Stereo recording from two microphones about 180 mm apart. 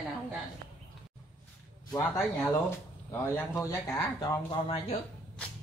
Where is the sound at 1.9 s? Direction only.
15° left (ahead or behind).